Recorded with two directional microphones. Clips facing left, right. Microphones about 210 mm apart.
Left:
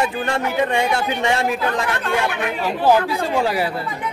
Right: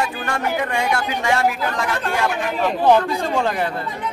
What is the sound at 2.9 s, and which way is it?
Speech, 5° left (ahead or behind).